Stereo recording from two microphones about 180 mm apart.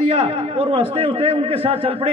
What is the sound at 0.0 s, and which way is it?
A man's voice, 35° right (ahead or behind).